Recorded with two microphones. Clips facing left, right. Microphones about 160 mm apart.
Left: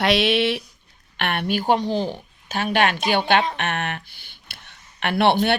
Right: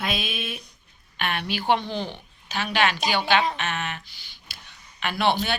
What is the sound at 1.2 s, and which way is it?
A woman's voice, 60° left (ahead or behind).